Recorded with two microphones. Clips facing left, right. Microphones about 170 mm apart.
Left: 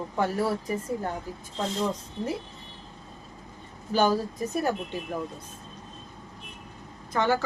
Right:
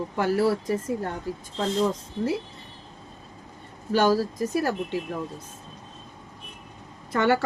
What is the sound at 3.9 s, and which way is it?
Speech, 90° right.